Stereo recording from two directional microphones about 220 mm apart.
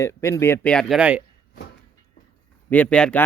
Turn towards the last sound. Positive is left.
turn(degrees=5)  # may be behind; listen again after turning